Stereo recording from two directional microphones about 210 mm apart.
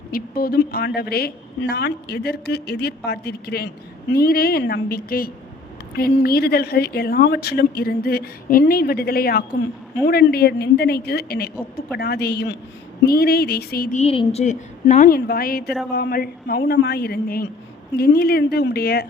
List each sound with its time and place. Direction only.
0.1 s a woman's voice: 45° left (ahead or behind)
14.0 s a woman's voice: 30° left (ahead or behind); by 19.0 s 50° left (ahead or behind)